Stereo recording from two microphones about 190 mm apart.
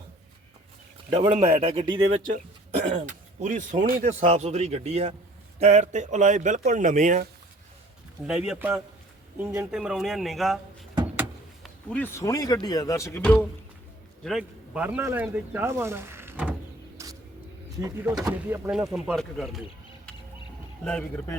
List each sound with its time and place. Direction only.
1.1 s speech: 25° right (ahead or behind)
2.0 s speech: 90° right
2.8 s speech: 35° right (ahead or behind)
8.3 s speech: 5° right (ahead or behind)
11.6 s speech: 5° left (ahead or behind)
14.3 s speech: 5° right (ahead or behind)
17.0 s vehicle: 15° right (ahead or behind)
17.7 s speech: 15° right (ahead or behind); by 19.6 s centre (ahead or behind)
20.8 s speech: 5° left (ahead or behind)